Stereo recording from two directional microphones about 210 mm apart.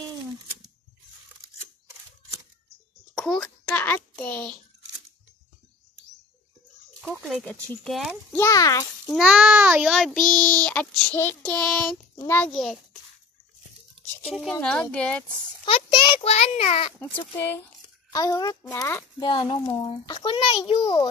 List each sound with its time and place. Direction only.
3.2 s a sound: centre (ahead or behind)
7.0 s a sound: 5° right (ahead or behind)
7.4 s speech: 5° left (ahead or behind)
8.4 s a child's voice: 15° left (ahead or behind)
9.0 s a child's voice: centre (ahead or behind)
14.2 s speech: centre (ahead or behind)
15.6 s a child's voice: 25° left (ahead or behind)
18.1 s a child's voice: 15° left (ahead or behind)